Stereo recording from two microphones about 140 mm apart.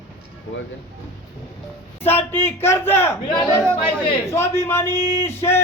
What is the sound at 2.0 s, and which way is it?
A man's voice, 15° left (ahead or behind).